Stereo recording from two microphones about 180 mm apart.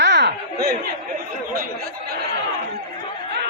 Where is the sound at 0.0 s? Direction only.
75° right (ahead or behind).